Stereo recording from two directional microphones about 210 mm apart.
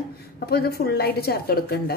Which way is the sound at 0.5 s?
50° left (ahead or behind).